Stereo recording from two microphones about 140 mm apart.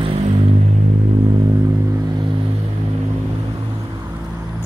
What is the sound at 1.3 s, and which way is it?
Vehicle, 30° right (ahead or behind).